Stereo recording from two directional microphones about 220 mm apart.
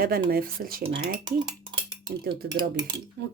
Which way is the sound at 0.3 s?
40° right (ahead or behind).